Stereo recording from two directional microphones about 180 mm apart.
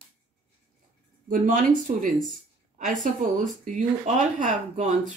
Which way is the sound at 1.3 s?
45° right (ahead or behind).